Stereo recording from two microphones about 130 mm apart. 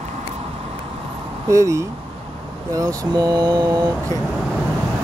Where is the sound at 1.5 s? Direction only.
25° right (ahead or behind).